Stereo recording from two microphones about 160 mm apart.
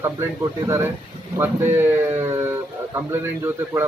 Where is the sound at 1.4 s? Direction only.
15° right (ahead or behind).